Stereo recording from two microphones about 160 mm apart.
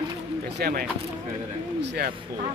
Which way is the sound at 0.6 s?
75° right (ahead or behind).